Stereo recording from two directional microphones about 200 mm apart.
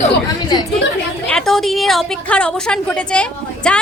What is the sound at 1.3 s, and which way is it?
A woman's voice, centre (ahead or behind).